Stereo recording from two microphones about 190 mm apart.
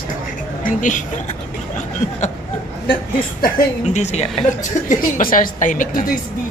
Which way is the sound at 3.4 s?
35° left (ahead or behind).